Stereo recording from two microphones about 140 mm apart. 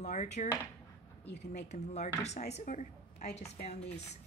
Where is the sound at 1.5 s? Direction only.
55° left (ahead or behind).